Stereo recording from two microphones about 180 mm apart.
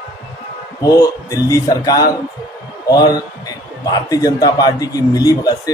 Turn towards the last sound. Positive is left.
turn(degrees=20)  # may be behind; listen again after turning